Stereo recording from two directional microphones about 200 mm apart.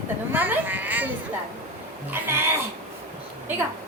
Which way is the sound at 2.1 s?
10° right (ahead or behind).